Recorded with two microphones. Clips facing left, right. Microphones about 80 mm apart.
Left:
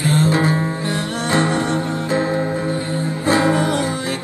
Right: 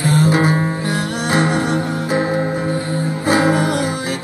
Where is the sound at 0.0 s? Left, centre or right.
Centre.